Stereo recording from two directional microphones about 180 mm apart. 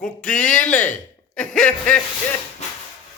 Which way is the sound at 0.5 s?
5° left (ahead or behind).